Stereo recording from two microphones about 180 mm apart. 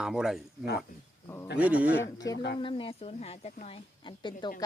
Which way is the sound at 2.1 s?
20° left (ahead or behind).